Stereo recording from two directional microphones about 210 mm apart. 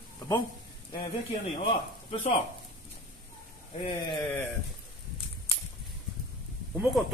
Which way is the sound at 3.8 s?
20° left (ahead or behind).